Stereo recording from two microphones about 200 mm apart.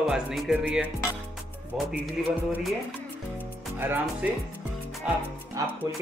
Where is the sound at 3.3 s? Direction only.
10° right (ahead or behind).